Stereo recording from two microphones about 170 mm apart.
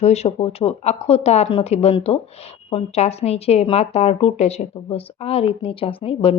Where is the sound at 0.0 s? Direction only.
40° left (ahead or behind).